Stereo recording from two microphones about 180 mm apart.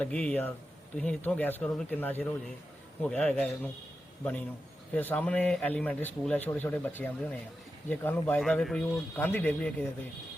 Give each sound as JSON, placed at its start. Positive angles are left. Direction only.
{"t": 0.0, "sound": "speech", "side_deg": 5}